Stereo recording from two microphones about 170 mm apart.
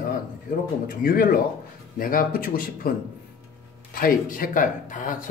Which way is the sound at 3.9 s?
55° left (ahead or behind).